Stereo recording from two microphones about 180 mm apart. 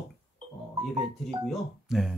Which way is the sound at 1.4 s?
Centre (ahead or behind).